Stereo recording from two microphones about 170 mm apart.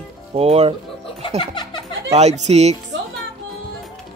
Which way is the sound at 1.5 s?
25° left (ahead or behind).